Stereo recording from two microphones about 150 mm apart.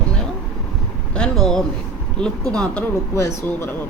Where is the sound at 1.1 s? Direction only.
5° left (ahead or behind).